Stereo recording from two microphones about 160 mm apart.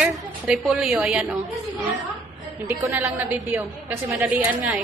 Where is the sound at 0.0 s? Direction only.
5° right (ahead or behind).